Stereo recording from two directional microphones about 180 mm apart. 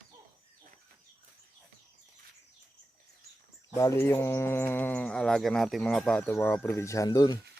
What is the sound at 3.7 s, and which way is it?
Speech, 15° left (ahead or behind).